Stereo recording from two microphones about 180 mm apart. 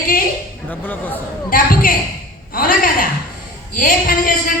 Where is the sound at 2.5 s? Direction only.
50° left (ahead or behind).